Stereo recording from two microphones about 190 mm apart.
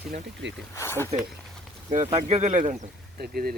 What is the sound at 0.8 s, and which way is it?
Speech, 15° left (ahead or behind).